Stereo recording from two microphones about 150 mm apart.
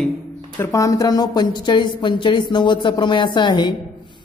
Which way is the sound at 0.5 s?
20° left (ahead or behind).